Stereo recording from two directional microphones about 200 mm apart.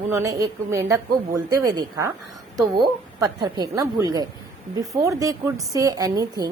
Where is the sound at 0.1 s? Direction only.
15° right (ahead or behind).